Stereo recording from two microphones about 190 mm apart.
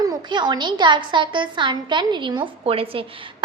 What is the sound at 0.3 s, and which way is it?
A woman's voice, 25° right (ahead or behind).